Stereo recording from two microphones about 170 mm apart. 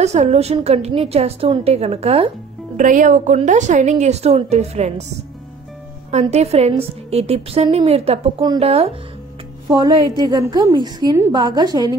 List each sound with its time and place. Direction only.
0.0 s a woman's voice: 40° right (ahead or behind)
2.8 s a woman's voice: 50° right (ahead or behind)
6.3 s a woman's voice: 40° right (ahead or behind)
8.4 s a woman's voice: 25° right (ahead or behind)
8.6 s a woman's voice: 35° right (ahead or behind)
9.7 s a woman's voice: 25° right (ahead or behind)